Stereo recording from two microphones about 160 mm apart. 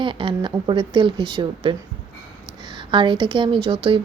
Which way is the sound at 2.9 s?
30° right (ahead or behind).